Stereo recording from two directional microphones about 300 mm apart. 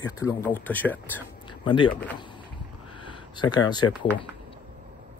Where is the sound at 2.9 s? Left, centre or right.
Centre.